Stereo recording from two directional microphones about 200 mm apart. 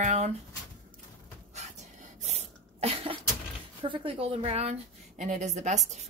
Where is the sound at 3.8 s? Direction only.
25° right (ahead or behind).